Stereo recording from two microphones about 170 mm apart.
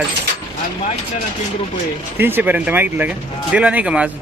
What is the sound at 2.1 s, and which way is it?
A man's voice, 10° right (ahead or behind).